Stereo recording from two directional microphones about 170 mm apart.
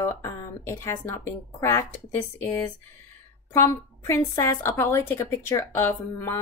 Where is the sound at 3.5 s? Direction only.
15° left (ahead or behind).